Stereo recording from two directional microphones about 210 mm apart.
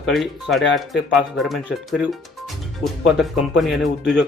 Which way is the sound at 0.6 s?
60° left (ahead or behind).